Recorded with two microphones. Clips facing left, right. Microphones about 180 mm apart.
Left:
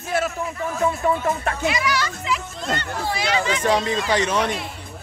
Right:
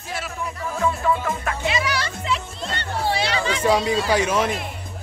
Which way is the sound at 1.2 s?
40° left (ahead or behind).